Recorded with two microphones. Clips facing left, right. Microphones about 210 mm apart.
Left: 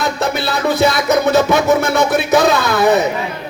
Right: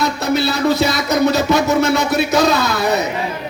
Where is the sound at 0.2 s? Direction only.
55° left (ahead or behind).